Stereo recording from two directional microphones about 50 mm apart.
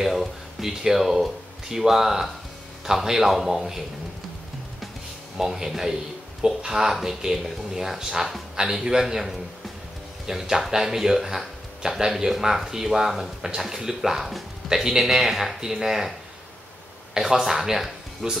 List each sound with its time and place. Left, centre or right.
0.0 s speech: centre
5.4 s speech: centre
17.1 s speech: centre